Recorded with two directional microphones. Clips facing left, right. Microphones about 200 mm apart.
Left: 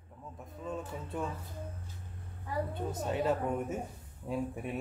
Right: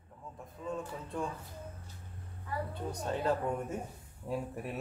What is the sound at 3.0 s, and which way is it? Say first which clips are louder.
Speech: left 1 dB; 5° left (ahead or behind).